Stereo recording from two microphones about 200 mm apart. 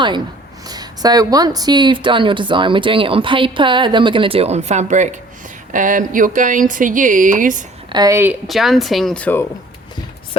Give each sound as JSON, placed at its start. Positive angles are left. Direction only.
{"t": 0.7, "sound": "a woman's voice", "side_deg": -20}
{"t": 7.9, "sound": "a woman's voice", "side_deg": -15}
{"t": 8.4, "sound": "speech", "side_deg": 0}